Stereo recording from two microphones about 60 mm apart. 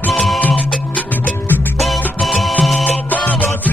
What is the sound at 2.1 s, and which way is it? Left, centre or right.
Music, centre.